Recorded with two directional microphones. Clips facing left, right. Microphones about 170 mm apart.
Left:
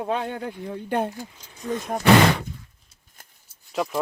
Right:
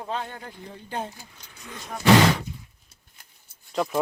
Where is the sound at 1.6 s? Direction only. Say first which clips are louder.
Left 7 dB; 50° left (ahead or behind).